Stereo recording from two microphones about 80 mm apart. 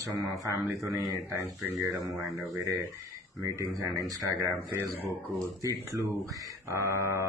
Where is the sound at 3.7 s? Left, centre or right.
Right.